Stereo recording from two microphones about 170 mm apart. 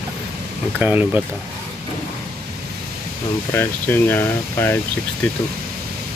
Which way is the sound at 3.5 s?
10° left (ahead or behind).